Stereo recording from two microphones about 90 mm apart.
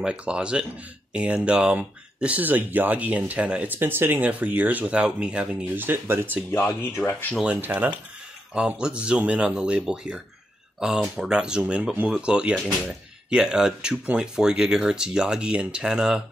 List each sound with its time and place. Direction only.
0.0 s speech: 10° right (ahead or behind)
5.8 s speech: 25° right (ahead or behind)
6.5 s speech: 20° left (ahead or behind)
7.4 s speech: 15° right (ahead or behind)